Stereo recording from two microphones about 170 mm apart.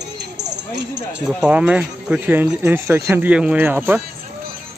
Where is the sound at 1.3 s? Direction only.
5° right (ahead or behind).